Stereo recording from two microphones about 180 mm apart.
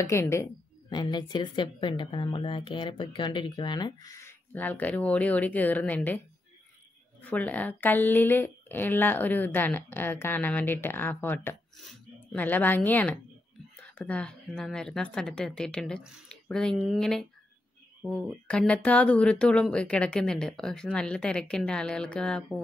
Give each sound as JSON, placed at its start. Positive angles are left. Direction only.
{"t": 0.1, "sound": "a woman's voice", "side_deg": 15}